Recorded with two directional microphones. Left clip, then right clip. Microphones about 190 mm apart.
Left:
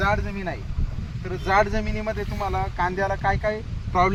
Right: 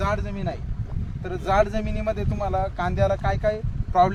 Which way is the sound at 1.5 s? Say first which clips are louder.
Left 1 dB; 40° right (ahead or behind).